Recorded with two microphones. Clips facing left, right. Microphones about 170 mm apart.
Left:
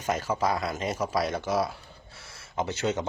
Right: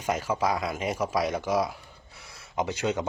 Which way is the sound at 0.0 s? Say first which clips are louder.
Even; 10° right (ahead or behind).